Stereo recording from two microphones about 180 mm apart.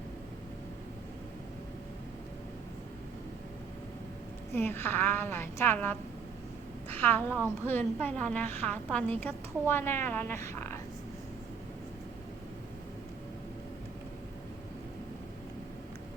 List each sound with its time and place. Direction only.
4.5 s a woman's voice: 10° left (ahead or behind)